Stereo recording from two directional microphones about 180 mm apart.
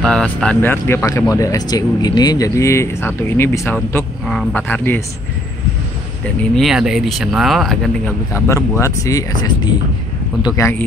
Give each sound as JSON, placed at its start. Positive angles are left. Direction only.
{"t": 0.0, "sound": "speech", "side_deg": 5}
{"t": 6.2, "sound": "speech", "side_deg": 0}
{"t": 8.3, "sound": "speech", "side_deg": 15}